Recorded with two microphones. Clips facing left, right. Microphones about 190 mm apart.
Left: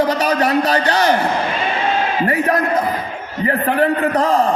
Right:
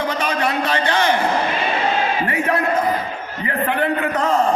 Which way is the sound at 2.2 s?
40° left (ahead or behind).